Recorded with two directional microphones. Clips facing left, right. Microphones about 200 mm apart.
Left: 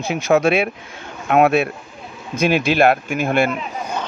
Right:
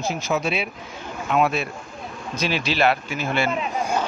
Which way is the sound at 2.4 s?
50° left (ahead or behind).